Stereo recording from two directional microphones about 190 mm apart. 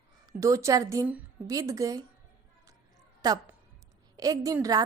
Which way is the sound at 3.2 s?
20° right (ahead or behind).